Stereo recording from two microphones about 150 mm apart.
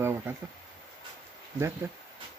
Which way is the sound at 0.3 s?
15° right (ahead or behind).